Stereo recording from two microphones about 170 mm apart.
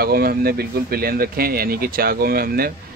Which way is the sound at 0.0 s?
65° right (ahead or behind).